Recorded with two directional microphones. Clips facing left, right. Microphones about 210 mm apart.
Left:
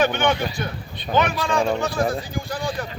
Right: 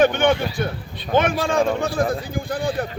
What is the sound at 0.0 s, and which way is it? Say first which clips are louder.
A man's voice: right 4 dB; 50° right (ahead or behind).